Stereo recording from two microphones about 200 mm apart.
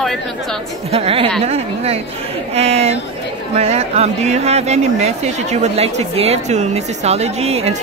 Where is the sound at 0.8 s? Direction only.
30° right (ahead or behind).